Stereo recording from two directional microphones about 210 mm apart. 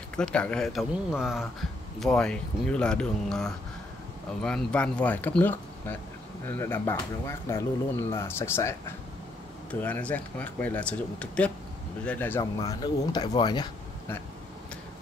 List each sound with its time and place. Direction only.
0.1 s speech: 5° left (ahead or behind)